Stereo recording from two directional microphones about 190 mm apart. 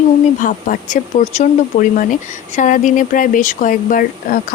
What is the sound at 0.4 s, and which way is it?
Speech, 45° left (ahead or behind).